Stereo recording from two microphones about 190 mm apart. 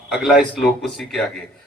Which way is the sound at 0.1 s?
Centre (ahead or behind).